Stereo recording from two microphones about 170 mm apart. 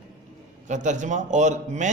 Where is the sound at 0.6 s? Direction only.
45° right (ahead or behind).